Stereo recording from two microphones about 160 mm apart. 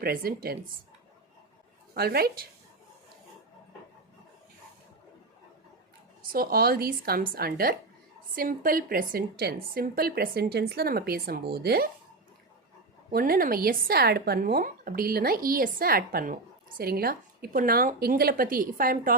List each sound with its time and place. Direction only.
0.0 s speech: 70° right (ahead or behind)
2.0 s speech: 75° right (ahead or behind)
6.2 s speech: 70° right (ahead or behind)
13.1 s speech: 70° right (ahead or behind)